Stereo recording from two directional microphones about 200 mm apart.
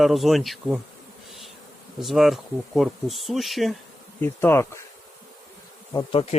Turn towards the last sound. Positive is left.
turn(degrees=30)  # may be behind; listen again after turning